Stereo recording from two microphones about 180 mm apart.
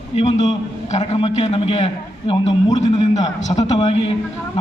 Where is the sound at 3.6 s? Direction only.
20° left (ahead or behind).